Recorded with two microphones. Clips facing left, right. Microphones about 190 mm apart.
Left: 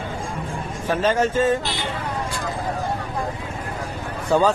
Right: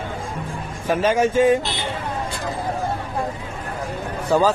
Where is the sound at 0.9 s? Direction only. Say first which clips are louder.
Right 2 dB; 10° right (ahead or behind).